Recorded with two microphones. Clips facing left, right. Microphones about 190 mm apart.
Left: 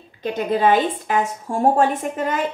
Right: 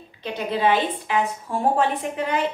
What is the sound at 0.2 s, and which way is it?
A woman's voice, 45° left (ahead or behind).